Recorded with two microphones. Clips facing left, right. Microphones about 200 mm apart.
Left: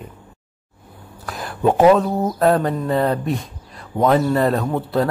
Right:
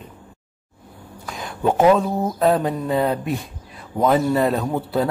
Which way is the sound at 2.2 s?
Centre (ahead or behind).